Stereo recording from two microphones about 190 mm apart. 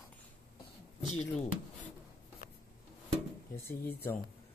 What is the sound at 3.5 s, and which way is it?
Speech, 15° left (ahead or behind).